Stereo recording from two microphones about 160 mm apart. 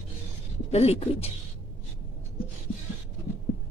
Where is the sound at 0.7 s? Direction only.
40° left (ahead or behind).